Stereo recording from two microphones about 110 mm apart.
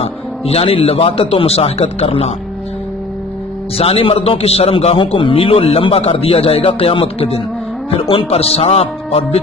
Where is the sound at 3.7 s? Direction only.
60° left (ahead or behind).